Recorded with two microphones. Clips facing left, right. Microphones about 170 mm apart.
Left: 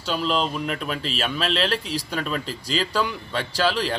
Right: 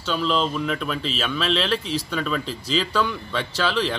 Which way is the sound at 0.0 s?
40° left (ahead or behind).